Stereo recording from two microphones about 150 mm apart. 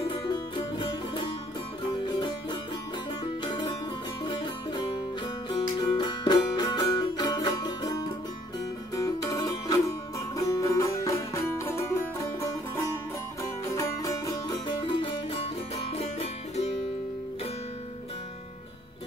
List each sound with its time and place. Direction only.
0.1 s music: 35° left (ahead or behind)